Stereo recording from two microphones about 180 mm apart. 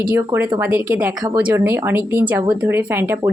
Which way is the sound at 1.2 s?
20° right (ahead or behind).